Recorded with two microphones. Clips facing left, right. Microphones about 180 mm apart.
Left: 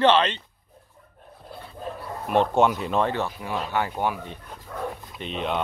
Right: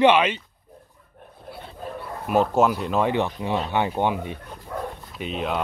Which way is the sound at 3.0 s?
15° right (ahead or behind).